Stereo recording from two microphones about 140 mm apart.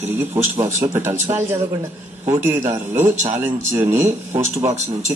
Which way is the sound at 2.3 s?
15° right (ahead or behind).